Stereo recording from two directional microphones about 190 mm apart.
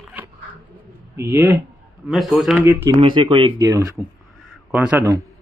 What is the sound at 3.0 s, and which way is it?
Speech, 25° right (ahead or behind).